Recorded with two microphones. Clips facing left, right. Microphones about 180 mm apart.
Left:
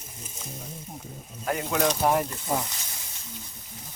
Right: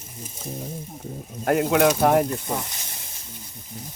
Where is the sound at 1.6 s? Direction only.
65° right (ahead or behind).